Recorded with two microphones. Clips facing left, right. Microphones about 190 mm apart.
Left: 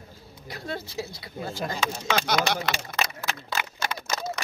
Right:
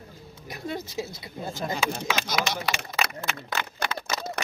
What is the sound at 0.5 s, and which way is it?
Speech, 20° right (ahead or behind).